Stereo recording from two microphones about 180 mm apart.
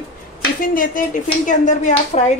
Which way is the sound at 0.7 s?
50° left (ahead or behind).